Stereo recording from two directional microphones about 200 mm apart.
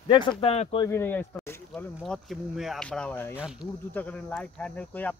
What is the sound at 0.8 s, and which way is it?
Speech, 10° left (ahead or behind).